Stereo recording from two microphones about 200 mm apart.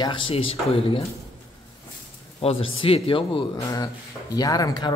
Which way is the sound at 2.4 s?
30° left (ahead or behind).